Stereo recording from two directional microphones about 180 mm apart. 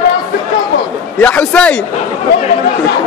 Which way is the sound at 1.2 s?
5° left (ahead or behind).